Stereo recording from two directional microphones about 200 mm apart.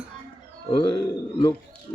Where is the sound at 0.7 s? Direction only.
25° left (ahead or behind).